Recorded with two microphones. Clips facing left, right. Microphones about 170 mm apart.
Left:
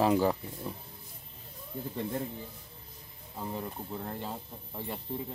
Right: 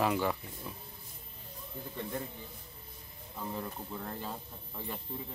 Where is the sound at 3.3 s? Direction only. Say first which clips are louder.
Left 2 dB; 20° left (ahead or behind).